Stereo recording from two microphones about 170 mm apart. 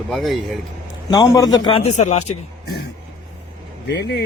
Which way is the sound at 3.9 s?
85° left.